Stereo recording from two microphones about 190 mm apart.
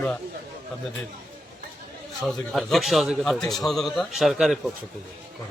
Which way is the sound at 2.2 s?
Centre (ahead or behind).